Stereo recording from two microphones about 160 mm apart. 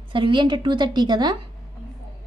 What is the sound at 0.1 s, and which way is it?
A woman's voice, 30° right (ahead or behind).